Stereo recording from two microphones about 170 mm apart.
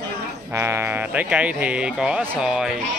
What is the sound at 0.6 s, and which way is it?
A man's voice, 15° right (ahead or behind).